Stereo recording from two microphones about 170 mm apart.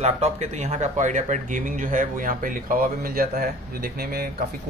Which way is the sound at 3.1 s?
60° right (ahead or behind).